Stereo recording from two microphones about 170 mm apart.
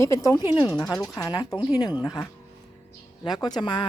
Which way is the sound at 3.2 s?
25° left (ahead or behind).